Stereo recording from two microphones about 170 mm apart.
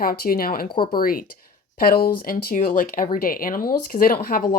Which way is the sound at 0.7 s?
30° left (ahead or behind).